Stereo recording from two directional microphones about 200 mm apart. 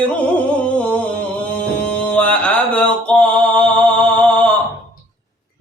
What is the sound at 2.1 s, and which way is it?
Mantra, 5° left (ahead or behind).